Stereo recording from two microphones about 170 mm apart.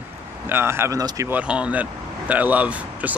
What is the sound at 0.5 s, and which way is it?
Speech, 15° right (ahead or behind).